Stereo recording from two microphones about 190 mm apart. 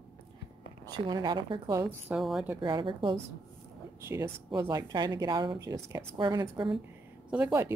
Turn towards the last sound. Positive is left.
turn(degrees=-10)  # may be behind; listen again after turning